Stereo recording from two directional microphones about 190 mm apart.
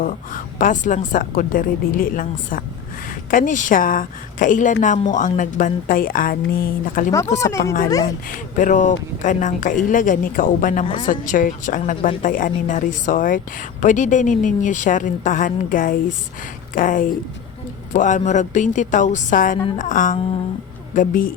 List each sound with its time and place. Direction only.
0.0 s a woman's voice: 45° left (ahead or behind)
7.3 s speech: 15° left (ahead or behind)
7.6 s a woman's voice: 50° left (ahead or behind)